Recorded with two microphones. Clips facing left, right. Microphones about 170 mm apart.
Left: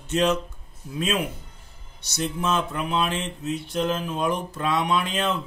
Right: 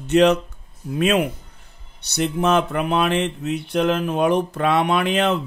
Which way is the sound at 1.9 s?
65° right (ahead or behind).